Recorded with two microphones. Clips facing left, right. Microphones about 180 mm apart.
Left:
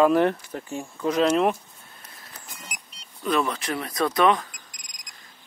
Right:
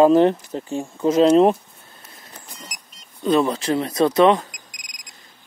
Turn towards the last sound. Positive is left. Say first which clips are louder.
# right 6 dB
turn(degrees=-25)  # may be behind; listen again after turning